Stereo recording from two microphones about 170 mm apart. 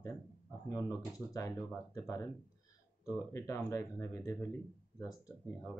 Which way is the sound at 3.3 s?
15° left (ahead or behind).